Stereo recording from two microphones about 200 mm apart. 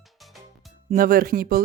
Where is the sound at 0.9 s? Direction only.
45° right (ahead or behind).